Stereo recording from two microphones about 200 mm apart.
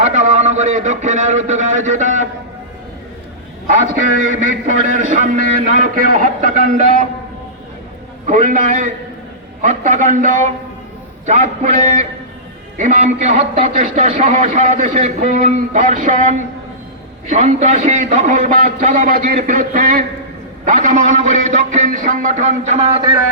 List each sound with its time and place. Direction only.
0.0 s a sound: 35° right (ahead or behind)
4.3 s a man's voice: 40° right (ahead or behind)
8.3 s a man's voice: 40° right (ahead or behind)